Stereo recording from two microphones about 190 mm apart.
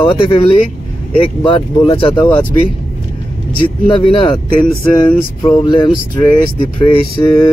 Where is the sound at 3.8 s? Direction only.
25° left (ahead or behind).